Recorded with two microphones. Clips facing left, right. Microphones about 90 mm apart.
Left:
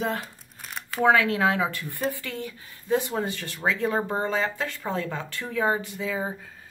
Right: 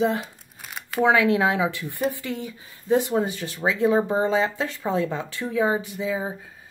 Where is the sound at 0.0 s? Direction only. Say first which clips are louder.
Right 6 dB; 20° right (ahead or behind).